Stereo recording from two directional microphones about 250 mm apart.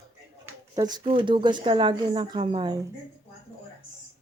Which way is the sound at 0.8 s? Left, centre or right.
Centre.